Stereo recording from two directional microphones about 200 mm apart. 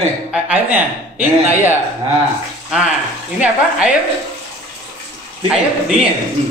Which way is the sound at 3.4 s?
5° right (ahead or behind).